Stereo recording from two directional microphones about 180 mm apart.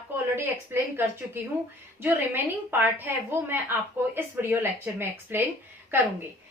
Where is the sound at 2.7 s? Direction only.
10° right (ahead or behind).